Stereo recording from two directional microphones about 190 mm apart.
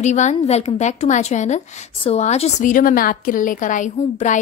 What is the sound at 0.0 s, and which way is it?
A woman's voice, 40° left (ahead or behind).